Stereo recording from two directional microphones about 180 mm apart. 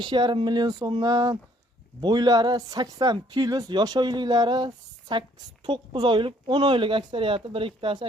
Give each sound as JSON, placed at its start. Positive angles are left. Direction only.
{"t": 0.0, "sound": "speech", "side_deg": -25}